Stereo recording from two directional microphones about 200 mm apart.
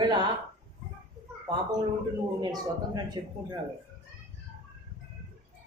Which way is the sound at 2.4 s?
20° right (ahead or behind).